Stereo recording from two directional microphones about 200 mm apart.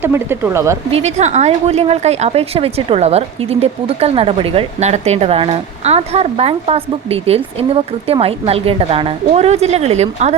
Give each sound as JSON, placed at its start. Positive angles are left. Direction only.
{"t": 0.0, "sound": "speech", "side_deg": -10}
{"t": 0.9, "sound": "a woman's voice", "side_deg": -35}